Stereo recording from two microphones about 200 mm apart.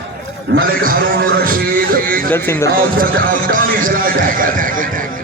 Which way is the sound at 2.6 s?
45° right (ahead or behind).